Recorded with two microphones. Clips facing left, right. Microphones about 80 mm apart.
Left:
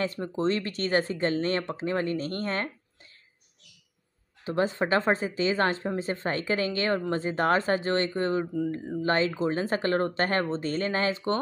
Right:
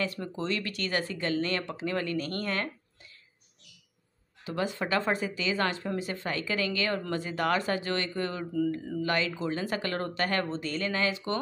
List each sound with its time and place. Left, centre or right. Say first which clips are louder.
0.0 s speech: left 5 dB; left
4.5 s speech: left 5 dB; left